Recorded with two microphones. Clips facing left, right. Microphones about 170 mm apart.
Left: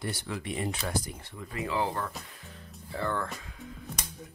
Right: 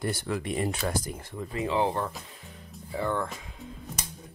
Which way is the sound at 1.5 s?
25° right (ahead or behind).